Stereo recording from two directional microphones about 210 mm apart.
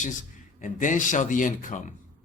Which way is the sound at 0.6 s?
40° left (ahead or behind).